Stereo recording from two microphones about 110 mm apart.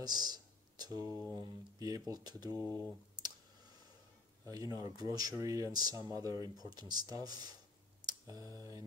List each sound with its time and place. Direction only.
0.0 s a sound: 40° right (ahead or behind)
1.3 s speech: 35° right (ahead or behind)
4.5 s speech: 35° right (ahead or behind)